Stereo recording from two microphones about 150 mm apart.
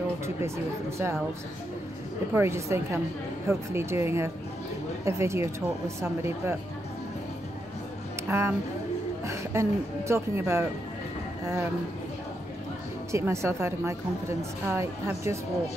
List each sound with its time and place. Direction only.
0.4 s a woman's voice: 15° right (ahead or behind)
2.3 s a woman's voice: 15° right (ahead or behind)
8.3 s a woman's voice: 15° right (ahead or behind)
13.1 s a woman's voice: 20° right (ahead or behind)